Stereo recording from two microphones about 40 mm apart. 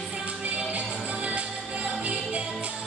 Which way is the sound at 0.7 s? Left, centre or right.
Right.